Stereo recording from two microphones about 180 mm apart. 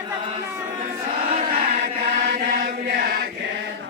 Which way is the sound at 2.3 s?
60° right (ahead or behind).